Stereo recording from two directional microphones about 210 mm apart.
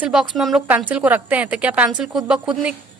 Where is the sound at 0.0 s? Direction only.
5° right (ahead or behind).